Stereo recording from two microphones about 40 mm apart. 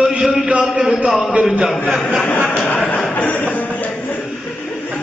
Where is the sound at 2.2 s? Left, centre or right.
Left.